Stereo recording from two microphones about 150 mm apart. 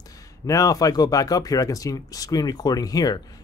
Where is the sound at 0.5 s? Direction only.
20° left (ahead or behind).